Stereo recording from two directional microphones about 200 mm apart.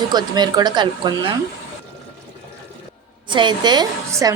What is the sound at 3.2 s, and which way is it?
A woman's voice, 25° right (ahead or behind).